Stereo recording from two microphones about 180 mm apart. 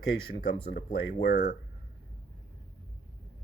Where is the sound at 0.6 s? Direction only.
85° left.